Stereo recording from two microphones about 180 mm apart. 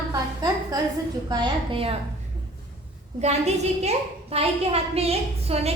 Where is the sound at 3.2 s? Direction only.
40° right (ahead or behind).